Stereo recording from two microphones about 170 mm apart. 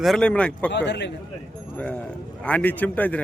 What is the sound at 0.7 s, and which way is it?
Speech, 90° left.